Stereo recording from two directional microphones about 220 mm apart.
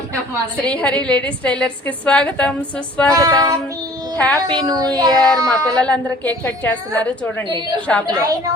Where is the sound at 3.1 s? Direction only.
15° right (ahead or behind).